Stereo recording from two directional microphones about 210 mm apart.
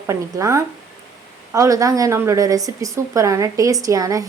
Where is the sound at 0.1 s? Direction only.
15° right (ahead or behind).